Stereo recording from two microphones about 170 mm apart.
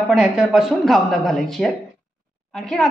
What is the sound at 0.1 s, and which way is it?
A woman's voice, 5° right (ahead or behind).